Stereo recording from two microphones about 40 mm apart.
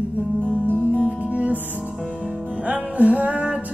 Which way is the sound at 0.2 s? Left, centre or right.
Left.